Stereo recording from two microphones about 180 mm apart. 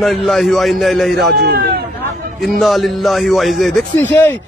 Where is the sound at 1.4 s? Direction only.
60° right (ahead or behind).